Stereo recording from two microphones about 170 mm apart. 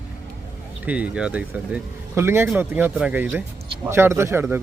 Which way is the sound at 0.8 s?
5° right (ahead or behind).